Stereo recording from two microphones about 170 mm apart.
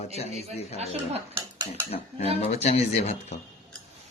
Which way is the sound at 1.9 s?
35° left (ahead or behind).